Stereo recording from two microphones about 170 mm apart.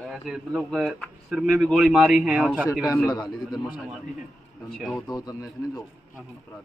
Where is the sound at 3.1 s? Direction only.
25° left (ahead or behind).